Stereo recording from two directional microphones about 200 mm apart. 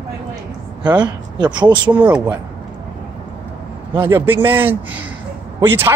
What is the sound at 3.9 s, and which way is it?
Speech, 15° right (ahead or behind).